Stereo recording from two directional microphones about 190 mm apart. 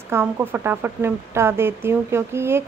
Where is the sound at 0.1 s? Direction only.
10° right (ahead or behind).